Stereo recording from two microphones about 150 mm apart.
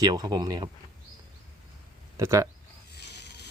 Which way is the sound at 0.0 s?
30° right (ahead or behind).